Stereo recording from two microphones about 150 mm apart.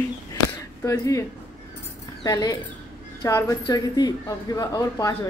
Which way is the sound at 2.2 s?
25° left (ahead or behind).